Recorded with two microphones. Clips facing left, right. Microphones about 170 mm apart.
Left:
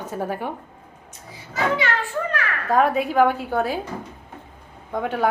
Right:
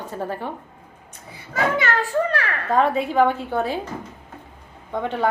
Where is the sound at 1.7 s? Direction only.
45° right (ahead or behind).